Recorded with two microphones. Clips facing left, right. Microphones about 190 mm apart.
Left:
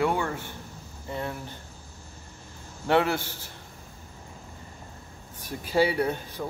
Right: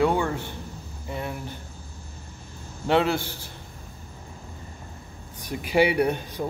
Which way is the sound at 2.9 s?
15° right (ahead or behind).